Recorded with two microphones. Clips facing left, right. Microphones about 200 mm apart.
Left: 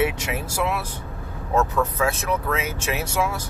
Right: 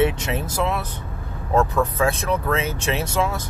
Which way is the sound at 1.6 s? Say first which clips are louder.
Right 1 dB; 10° right (ahead or behind).